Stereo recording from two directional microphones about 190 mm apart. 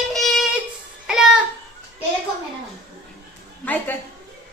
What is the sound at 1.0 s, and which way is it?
Music, 5° right (ahead or behind).